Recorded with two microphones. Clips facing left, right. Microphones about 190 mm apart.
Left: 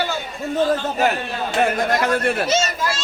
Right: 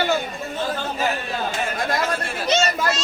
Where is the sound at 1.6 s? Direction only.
60° left (ahead or behind).